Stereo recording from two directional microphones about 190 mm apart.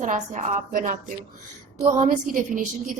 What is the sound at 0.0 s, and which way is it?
A woman's voice, 40° right (ahead or behind).